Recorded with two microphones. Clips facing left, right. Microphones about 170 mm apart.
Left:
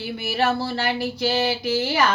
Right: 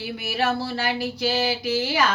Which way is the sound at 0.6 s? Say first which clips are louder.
Left 2 dB; 55° left (ahead or behind).